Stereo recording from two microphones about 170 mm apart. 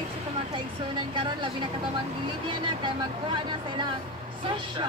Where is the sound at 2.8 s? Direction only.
30° right (ahead or behind).